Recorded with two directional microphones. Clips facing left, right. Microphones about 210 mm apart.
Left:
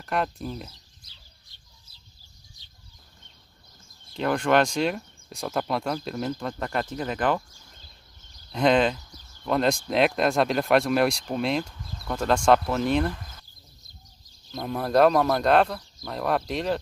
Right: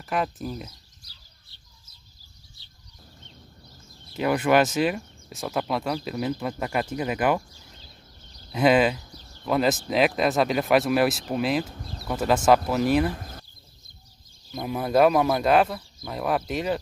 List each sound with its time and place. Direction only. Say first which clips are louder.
0.0 s speech: even; 5° right (ahead or behind)
4.1 s speech: right 1 dB; 5° right (ahead or behind)
8.5 s speech: right 1 dB; 5° right (ahead or behind)
13.1 s a sound: right 4 dB; 45° right (ahead or behind)
14.5 s speech: even; 5° right (ahead or behind)